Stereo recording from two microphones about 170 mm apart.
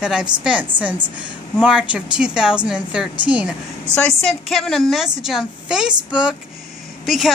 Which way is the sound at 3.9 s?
5° left (ahead or behind).